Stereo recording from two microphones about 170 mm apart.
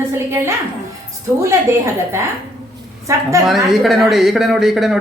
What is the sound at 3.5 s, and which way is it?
Speech, centre (ahead or behind).